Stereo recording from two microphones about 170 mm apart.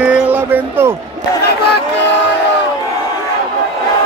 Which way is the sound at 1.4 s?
70° left (ahead or behind).